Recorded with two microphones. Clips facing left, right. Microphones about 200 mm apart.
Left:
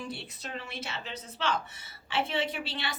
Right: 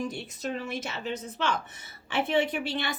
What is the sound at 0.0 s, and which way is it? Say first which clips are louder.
A woman's voice: right 7 dB; 45° right (ahead or behind).